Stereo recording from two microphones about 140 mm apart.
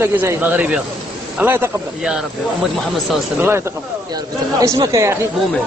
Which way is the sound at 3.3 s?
15° right (ahead or behind).